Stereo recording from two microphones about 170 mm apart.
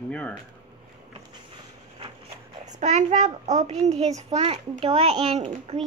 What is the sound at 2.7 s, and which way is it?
A child's voice, 45° right (ahead or behind).